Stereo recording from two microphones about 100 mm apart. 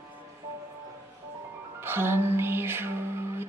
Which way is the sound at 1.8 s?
25° right (ahead or behind).